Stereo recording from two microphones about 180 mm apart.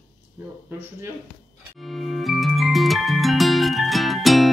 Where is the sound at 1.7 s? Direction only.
Centre (ahead or behind).